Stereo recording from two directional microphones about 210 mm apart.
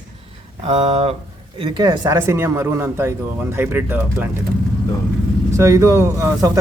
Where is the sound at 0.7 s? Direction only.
30° right (ahead or behind); by 4.3 s 10° right (ahead or behind).